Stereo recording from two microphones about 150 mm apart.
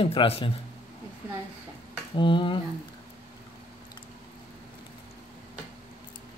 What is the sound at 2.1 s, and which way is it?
Speech, 35° left (ahead or behind).